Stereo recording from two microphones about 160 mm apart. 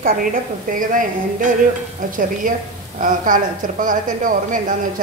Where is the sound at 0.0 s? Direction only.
60° right (ahead or behind).